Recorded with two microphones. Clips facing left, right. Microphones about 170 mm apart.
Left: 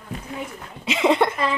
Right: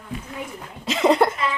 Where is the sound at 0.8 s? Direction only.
Centre (ahead or behind).